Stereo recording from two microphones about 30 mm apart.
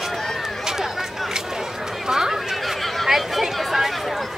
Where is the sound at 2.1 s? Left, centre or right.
Centre.